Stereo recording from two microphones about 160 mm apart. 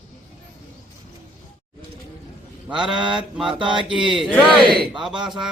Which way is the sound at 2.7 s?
10° right (ahead or behind).